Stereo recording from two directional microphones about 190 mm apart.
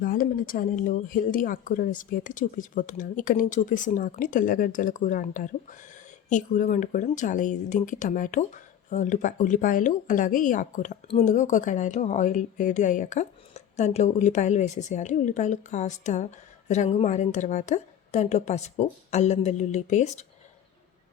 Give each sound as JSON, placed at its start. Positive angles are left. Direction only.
{"t": 0.0, "sound": "speech", "side_deg": 45}